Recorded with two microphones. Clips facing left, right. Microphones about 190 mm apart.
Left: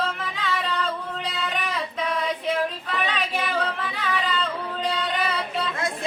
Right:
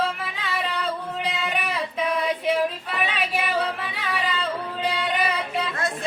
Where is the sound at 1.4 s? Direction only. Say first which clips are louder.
Right 1 dB; 10° right (ahead or behind).